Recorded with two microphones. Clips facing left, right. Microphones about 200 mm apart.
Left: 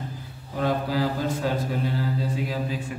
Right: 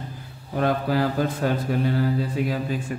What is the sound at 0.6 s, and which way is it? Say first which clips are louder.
Mantra: right 2 dB; 60° right (ahead or behind).